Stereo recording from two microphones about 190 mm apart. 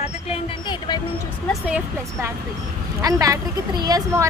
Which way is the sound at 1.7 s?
15° right (ahead or behind).